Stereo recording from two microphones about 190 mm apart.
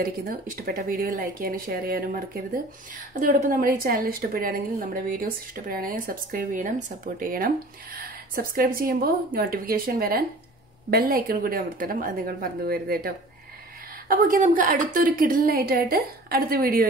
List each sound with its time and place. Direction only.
0.0 s speech: 50° right (ahead or behind)